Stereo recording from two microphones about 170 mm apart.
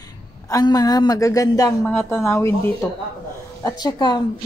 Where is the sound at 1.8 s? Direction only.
10° left (ahead or behind).